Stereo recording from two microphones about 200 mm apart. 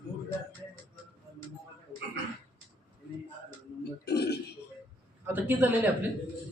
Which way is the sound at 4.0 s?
55° left (ahead or behind).